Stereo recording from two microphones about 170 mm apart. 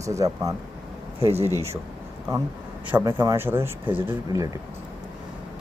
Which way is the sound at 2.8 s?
15° right (ahead or behind).